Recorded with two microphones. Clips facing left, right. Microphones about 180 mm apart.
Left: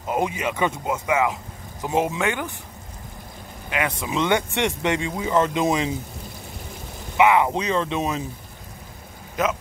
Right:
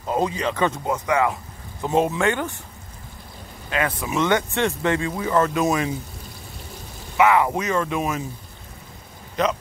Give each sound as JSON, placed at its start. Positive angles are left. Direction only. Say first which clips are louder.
{"t": 0.0, "sound": "speech", "louder": "right 1 dB", "side_deg": 15}
{"t": 3.7, "sound": "speech", "louder": "right 1 dB", "side_deg": 15}
{"t": 7.2, "sound": "speech", "louder": "even", "side_deg": 20}
{"t": 9.4, "sound": "a man's voice", "louder": "right 1 dB", "side_deg": 5}